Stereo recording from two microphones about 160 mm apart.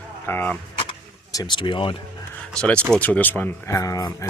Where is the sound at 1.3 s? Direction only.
25° left (ahead or behind).